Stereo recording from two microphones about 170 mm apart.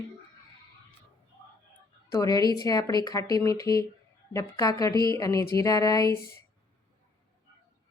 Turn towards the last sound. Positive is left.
turn(degrees=20)  # may be behind; listen again after turning